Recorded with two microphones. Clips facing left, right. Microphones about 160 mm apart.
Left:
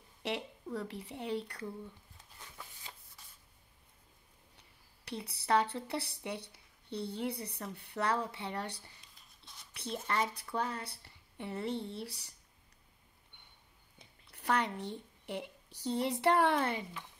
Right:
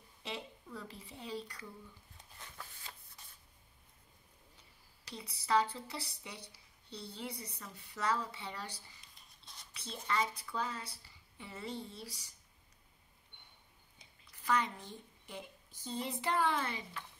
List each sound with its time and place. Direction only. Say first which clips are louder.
0.2 s speech: left 7 dB; 70° left (ahead or behind)
2.5 s a sound: left 1 dB; 10° left (ahead or behind)
5.0 s speech: left 5 dB; 65° left (ahead or behind)
14.3 s a woman's voice: left 2 dB; 65° left (ahead or behind)